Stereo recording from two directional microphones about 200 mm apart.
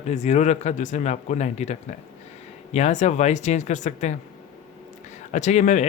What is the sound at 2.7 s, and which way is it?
Speech, 35° left (ahead or behind).